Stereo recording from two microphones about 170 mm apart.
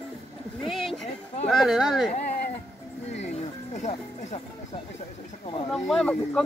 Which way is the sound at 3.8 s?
35° left (ahead or behind).